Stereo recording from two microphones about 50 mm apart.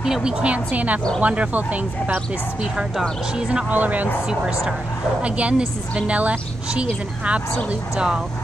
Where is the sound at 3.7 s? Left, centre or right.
Right.